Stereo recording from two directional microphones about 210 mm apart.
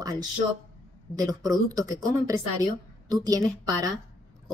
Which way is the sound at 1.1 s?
15° right (ahead or behind).